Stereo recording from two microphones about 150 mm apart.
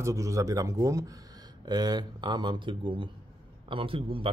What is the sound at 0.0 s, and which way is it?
A man's voice, 20° right (ahead or behind).